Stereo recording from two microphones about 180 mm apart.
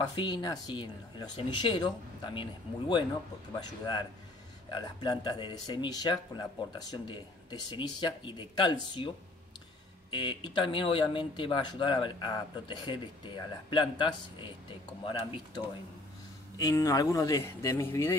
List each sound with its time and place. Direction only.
0.0 s speech: 25° left (ahead or behind)
3.5 s speech: 20° left (ahead or behind)
10.1 s speech: 25° left (ahead or behind)